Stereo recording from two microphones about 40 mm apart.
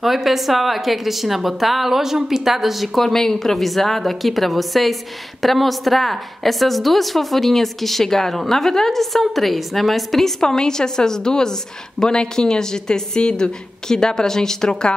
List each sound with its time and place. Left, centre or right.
0.0 s a woman's voice: centre
3.1 s a woman's voice: centre
10.4 s a woman's voice: centre